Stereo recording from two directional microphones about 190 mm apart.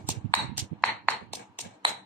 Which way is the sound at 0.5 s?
5° left (ahead or behind).